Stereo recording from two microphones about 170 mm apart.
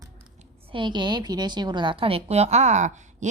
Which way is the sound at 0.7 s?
25° right (ahead or behind).